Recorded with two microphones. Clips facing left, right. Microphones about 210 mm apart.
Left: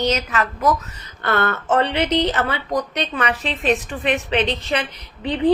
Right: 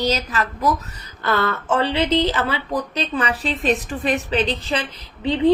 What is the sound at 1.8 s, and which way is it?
A woman's voice, 30° right (ahead or behind).